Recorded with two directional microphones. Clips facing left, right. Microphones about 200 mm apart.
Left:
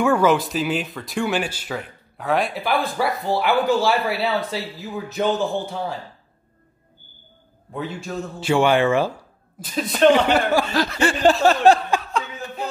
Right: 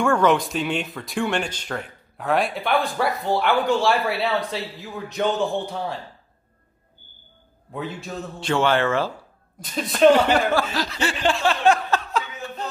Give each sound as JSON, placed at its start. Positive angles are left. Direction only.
{"t": 0.0, "sound": "speech", "side_deg": 5}
{"t": 7.7, "sound": "a man's voice", "side_deg": 0}
{"t": 9.6, "sound": "speech", "side_deg": 0}
{"t": 10.7, "sound": "snicker", "side_deg": 50}
{"t": 12.1, "sound": "chuckle", "side_deg": 0}